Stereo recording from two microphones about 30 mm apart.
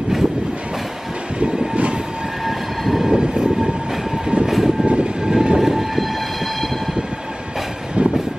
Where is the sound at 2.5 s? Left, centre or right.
Centre.